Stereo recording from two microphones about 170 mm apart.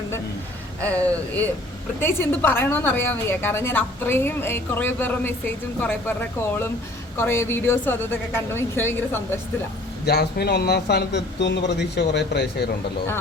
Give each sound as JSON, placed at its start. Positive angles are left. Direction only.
{"t": 0.8, "sound": "a woman's voice", "side_deg": 10}
{"t": 10.1, "sound": "a man's voice", "side_deg": 70}